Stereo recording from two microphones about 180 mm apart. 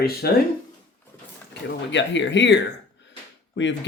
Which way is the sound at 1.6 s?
90° left.